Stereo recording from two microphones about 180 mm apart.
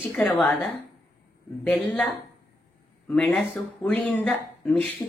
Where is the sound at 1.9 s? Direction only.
5° left (ahead or behind).